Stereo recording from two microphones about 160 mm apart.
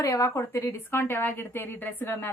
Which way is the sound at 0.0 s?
20° left (ahead or behind).